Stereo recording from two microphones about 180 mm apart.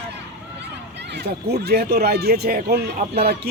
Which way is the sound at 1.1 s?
65° right (ahead or behind).